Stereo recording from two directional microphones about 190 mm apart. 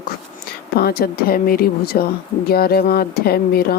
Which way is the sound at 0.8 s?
55° left (ahead or behind).